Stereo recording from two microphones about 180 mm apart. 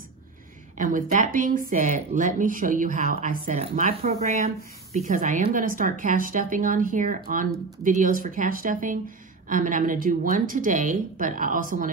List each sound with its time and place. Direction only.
0.7 s speech: 45° right (ahead or behind)